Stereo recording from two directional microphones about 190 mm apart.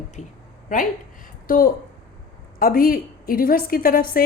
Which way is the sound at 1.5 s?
50° left (ahead or behind).